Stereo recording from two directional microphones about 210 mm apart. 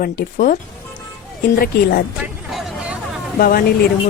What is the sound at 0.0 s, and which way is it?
Speech, 40° left (ahead or behind).